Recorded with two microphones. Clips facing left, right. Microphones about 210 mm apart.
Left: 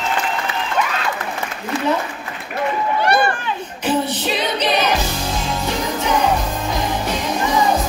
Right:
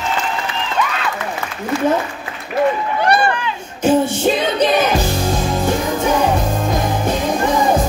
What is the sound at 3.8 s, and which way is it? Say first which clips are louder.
Singing: right 6 dB; 50° right (ahead or behind).